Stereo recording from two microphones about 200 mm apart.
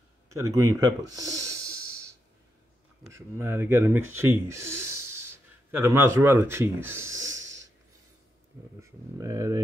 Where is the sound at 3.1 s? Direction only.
10° right (ahead or behind).